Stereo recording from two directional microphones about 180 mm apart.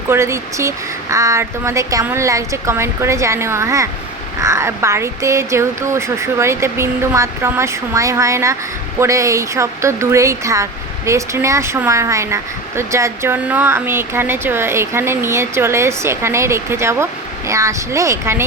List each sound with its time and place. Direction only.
0.1 s speech: 15° right (ahead or behind)